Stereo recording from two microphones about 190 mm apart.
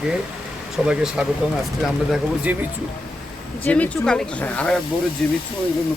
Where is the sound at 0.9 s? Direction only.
5° right (ahead or behind).